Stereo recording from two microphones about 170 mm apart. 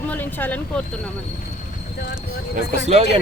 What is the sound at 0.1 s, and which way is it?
Speech, 10° left (ahead or behind).